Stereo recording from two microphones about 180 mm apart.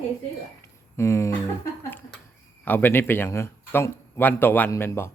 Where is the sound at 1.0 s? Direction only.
15° left (ahead or behind).